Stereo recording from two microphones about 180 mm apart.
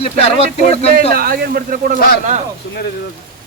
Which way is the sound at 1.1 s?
55° right (ahead or behind).